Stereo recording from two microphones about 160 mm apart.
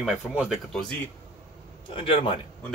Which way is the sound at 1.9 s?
35° left (ahead or behind).